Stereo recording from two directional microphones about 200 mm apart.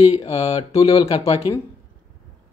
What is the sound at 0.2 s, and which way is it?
Mantra, 30° left (ahead or behind).